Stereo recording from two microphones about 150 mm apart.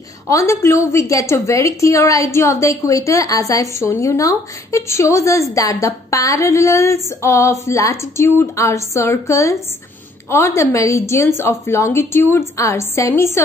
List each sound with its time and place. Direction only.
0.3 s a woman's voice: 20° left (ahead or behind)